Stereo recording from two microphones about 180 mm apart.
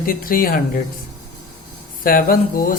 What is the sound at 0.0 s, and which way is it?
Speech, 50° left (ahead or behind).